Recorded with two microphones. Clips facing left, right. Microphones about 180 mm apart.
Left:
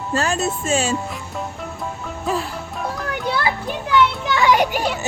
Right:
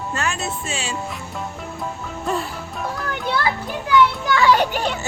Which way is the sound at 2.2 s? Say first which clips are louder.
Left 1 dB; centre (ahead or behind).